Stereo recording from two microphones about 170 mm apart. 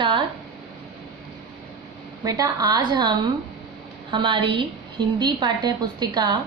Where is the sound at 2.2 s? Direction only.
20° right (ahead or behind).